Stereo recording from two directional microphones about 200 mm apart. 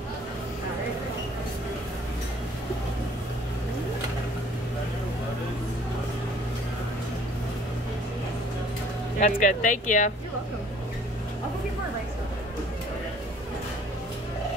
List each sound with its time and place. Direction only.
9.2 s speech: 40° left (ahead or behind)